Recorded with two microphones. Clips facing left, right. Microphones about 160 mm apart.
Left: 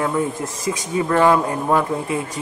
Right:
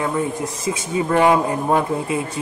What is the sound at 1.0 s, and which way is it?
A man's voice, 15° right (ahead or behind).